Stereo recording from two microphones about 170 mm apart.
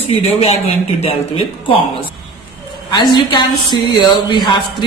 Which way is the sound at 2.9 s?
25° left (ahead or behind).